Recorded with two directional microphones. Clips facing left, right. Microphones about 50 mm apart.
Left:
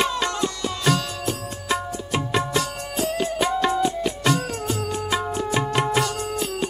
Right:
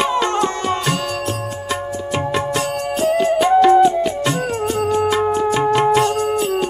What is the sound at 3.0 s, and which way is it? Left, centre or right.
Music, right.